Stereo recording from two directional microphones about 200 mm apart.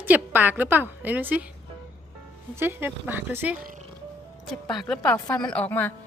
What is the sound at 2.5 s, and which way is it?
A woman's voice, 10° right (ahead or behind).